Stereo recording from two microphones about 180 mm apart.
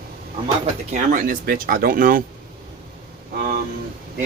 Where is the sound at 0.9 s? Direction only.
45° right (ahead or behind).